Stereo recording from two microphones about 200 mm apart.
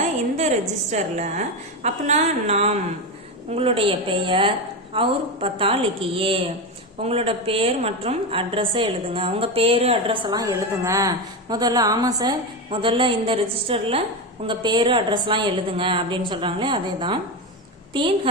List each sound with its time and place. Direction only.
0.3 s a woman's voice: 35° right (ahead or behind)